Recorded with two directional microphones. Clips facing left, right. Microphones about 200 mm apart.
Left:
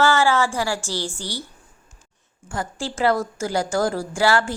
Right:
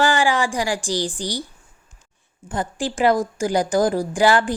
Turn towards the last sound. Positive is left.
turn(degrees=-15)  # may be behind; listen again after turning